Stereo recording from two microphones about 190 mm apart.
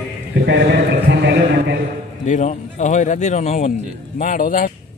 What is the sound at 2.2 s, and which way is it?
A man's voice, 40° left (ahead or behind).